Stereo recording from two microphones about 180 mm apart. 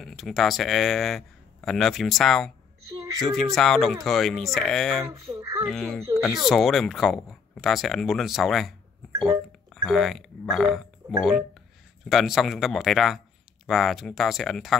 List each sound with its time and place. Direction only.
0.0 s speech: centre (ahead or behind)
5.3 s a child's voice: 15° right (ahead or behind)
5.7 s speech: centre (ahead or behind)
9.8 s speech: centre (ahead or behind)